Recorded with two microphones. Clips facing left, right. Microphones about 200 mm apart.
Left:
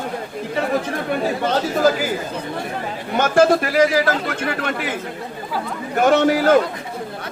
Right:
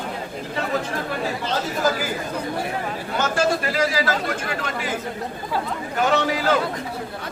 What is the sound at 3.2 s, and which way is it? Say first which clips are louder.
Speech: left 7 dB; 55° left (ahead or behind).